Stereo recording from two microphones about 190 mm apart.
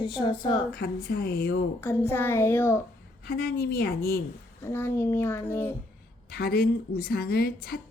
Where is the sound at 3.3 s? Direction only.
55° left (ahead or behind).